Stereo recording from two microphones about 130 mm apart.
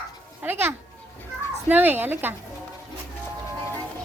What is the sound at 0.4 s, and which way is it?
A woman's voice, 15° right (ahead or behind).